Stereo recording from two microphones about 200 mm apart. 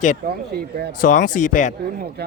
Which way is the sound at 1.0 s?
40° left (ahead or behind).